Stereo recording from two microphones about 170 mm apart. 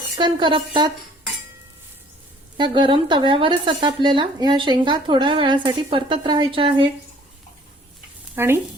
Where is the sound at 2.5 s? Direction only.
25° right (ahead or behind).